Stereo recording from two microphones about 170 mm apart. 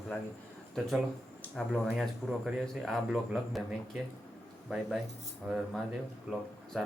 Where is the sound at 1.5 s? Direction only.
Centre (ahead or behind).